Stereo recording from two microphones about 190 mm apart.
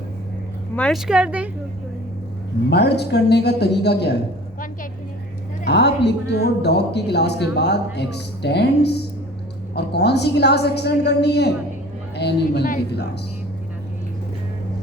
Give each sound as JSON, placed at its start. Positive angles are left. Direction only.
{"t": 0.8, "sound": "speech", "side_deg": 0}
{"t": 2.6, "sound": "speech", "side_deg": 60}
{"t": 5.6, "sound": "speech", "side_deg": 60}